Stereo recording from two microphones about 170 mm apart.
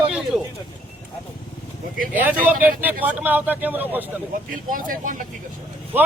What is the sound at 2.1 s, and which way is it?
Speech, 10° right (ahead or behind).